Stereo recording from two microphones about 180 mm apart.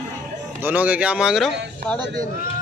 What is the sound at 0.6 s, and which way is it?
Speech, 10° right (ahead or behind).